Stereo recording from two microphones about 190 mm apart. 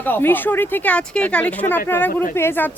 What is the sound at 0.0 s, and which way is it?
Speech, 10° left (ahead or behind).